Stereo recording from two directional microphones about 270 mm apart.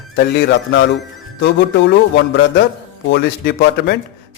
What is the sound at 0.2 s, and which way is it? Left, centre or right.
A man's voice, left.